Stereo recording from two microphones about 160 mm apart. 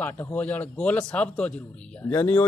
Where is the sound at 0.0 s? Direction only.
10° left (ahead or behind).